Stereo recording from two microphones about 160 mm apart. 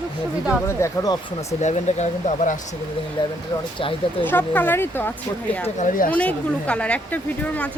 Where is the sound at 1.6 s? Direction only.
45° left (ahead or behind).